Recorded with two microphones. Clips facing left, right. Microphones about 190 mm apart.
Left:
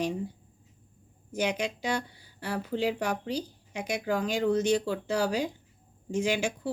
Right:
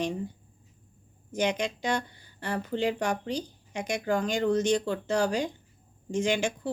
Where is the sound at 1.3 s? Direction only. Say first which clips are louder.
Right 1 dB; 5° left (ahead or behind).